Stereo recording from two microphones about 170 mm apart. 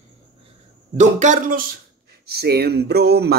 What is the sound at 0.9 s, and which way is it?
Speech, 45° right (ahead or behind).